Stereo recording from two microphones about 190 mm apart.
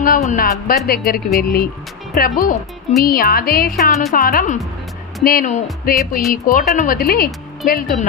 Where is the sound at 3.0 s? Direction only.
50° left (ahead or behind).